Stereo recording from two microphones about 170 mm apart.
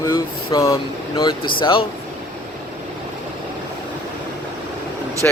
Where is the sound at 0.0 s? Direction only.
20° left (ahead or behind).